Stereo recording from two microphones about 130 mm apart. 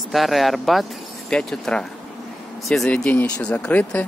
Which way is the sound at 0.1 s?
Centre (ahead or behind).